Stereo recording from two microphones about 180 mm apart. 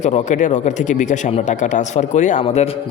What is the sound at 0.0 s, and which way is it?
Speech, 40° left (ahead or behind).